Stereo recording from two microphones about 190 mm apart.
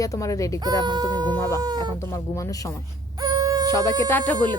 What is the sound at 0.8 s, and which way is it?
Speech, 20° right (ahead or behind).